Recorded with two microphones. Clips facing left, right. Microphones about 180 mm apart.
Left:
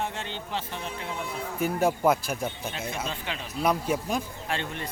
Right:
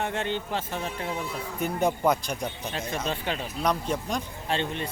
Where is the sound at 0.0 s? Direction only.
60° right (ahead or behind).